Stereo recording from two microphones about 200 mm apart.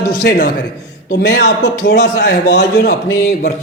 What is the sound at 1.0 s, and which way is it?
A man's voice, 55° left (ahead or behind).